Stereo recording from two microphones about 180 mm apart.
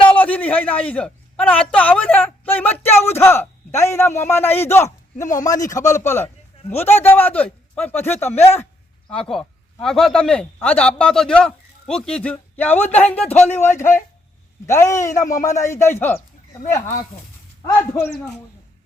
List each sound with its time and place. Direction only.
0.2 s a man's voice: 10° left (ahead or behind)